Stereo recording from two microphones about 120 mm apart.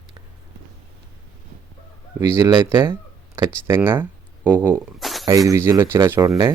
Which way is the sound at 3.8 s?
15° right (ahead or behind).